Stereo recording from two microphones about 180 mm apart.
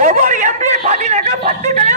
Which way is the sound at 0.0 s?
45° right (ahead or behind).